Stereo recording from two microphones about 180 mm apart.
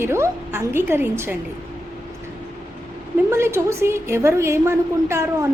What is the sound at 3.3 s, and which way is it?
A woman's voice, 15° right (ahead or behind).